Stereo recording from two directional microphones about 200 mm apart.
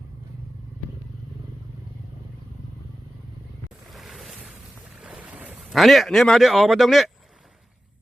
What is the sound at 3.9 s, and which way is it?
Ocean, centre (ahead or behind).